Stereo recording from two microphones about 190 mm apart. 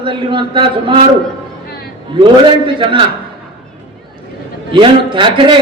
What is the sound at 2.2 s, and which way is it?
Speech, 25° right (ahead or behind).